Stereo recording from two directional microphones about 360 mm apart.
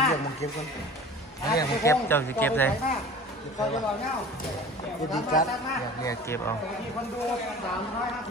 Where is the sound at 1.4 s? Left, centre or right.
Centre.